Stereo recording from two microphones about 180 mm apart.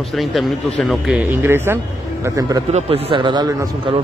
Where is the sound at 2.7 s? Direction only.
30° right (ahead or behind).